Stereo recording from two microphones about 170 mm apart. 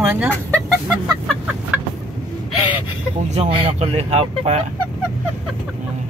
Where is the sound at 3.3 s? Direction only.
35° right (ahead or behind).